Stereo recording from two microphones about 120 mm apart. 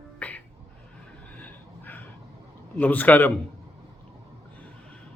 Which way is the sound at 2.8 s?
15° left (ahead or behind).